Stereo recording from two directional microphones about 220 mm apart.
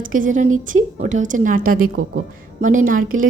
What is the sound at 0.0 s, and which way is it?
A woman's voice, 35° right (ahead or behind).